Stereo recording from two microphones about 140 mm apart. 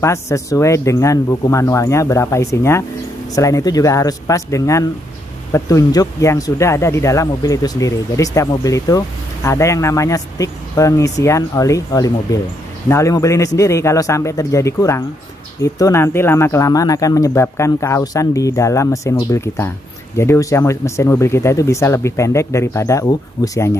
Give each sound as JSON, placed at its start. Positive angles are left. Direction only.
{"t": 0.0, "sound": "speech", "side_deg": 20}